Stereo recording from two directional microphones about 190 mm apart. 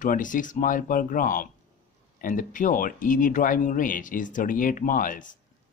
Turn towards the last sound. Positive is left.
turn(degrees=45)  # may be behind; listen again after turning